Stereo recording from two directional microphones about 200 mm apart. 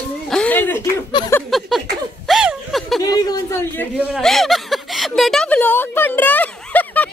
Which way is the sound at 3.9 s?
Centre (ahead or behind).